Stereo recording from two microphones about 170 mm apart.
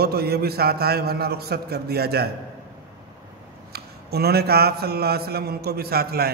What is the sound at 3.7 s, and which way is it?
A man's voice, 70° right (ahead or behind).